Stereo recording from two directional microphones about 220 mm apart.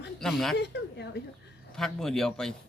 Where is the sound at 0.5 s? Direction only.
50° left (ahead or behind).